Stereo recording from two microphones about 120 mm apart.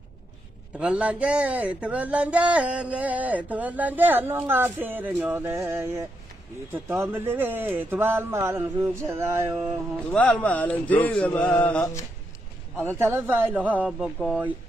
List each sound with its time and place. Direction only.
0.7 s speech: 10° right (ahead or behind)
7.1 s speech: 15° right (ahead or behind)
9.9 s mantra: 10° left (ahead or behind)
11.8 s speech: 25° left (ahead or behind)
12.9 s speech: 20° right (ahead or behind)